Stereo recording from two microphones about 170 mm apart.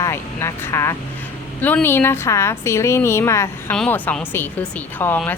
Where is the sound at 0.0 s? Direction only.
15° left (ahead or behind).